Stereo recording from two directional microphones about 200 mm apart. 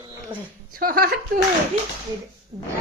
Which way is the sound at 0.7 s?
50° right (ahead or behind).